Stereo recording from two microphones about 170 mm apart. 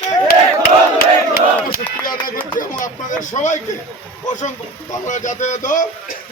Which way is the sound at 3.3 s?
45° left (ahead or behind).